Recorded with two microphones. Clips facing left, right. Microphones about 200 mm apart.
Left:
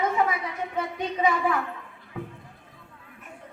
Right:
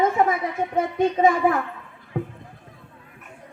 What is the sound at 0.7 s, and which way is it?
Speech, 50° right (ahead or behind).